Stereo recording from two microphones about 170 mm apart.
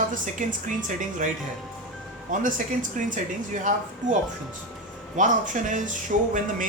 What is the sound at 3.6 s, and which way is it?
Speech, 50° right (ahead or behind).